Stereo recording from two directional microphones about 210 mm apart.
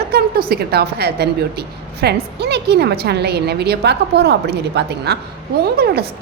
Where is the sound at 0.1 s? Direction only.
45° right (ahead or behind).